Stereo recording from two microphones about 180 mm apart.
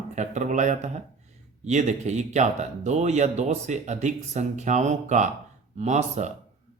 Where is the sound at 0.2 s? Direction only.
40° right (ahead or behind).